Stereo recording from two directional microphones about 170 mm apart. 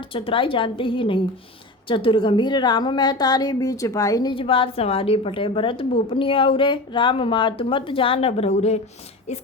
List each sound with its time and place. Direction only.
0.1 s a woman's voice: 30° left (ahead or behind)